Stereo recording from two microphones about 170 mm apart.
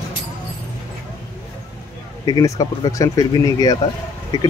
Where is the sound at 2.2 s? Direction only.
20° left (ahead or behind).